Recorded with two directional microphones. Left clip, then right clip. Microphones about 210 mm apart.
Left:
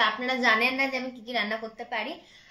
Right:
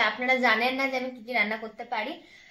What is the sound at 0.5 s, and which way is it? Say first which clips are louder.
Speech: left 1 dB; 5° left (ahead or behind).